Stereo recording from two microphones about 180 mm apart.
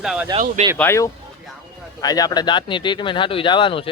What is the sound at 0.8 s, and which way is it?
Speech, 15° left (ahead or behind).